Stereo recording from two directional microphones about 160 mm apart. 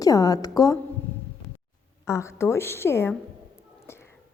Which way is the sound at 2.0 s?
20° left (ahead or behind).